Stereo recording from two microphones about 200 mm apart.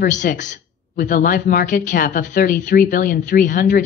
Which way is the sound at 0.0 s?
40° left (ahead or behind).